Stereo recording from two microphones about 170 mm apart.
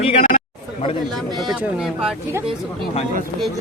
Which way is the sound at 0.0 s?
35° left (ahead or behind).